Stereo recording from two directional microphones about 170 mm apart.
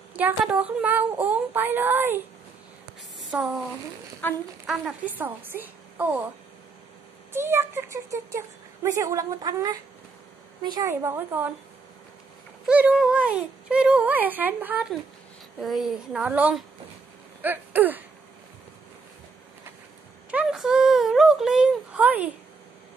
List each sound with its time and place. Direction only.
0.1 s speech: 10° right (ahead or behind)
3.3 s speech: 5° right (ahead or behind)
4.6 s speech: 5° right (ahead or behind)
7.3 s speech: 15° right (ahead or behind)
12.6 s a child's voice: 5° right (ahead or behind)
17.4 s a sound: 10° right (ahead or behind)
20.2 s a sound: 5° right (ahead or behind)